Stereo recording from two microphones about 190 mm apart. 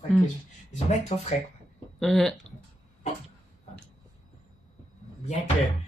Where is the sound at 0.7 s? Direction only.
35° left (ahead or behind).